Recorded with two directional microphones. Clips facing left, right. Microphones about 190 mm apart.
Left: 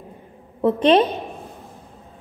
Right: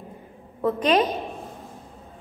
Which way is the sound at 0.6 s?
25° left (ahead or behind).